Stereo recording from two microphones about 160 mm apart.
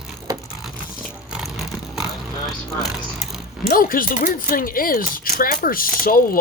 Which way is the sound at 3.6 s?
65° left (ahead or behind).